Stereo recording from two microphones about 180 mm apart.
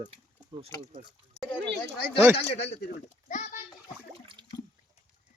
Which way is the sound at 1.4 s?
5° left (ahead or behind).